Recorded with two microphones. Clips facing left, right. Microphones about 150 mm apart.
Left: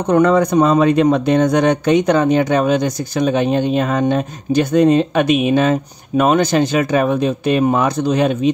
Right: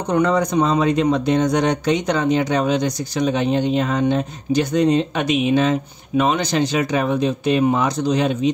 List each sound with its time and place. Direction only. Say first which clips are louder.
0.0 s speech: left 5 dB; 55° left (ahead or behind)